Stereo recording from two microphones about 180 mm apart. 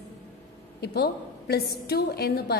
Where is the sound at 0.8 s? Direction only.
65° left (ahead or behind).